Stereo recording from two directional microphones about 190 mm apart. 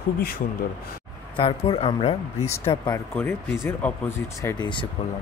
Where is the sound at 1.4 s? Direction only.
30° left (ahead or behind).